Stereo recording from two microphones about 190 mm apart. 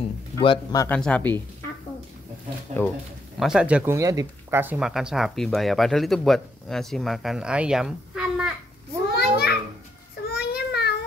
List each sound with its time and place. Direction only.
0.4 s speech: 25° left (ahead or behind)
0.8 s speech: 5° left (ahead or behind)
2.7 s speech: 40° right (ahead or behind)
3.3 s speech: 5° right (ahead or behind)
9.1 s children playing: 55° left (ahead or behind)
10.2 s child singing: 55° left (ahead or behind)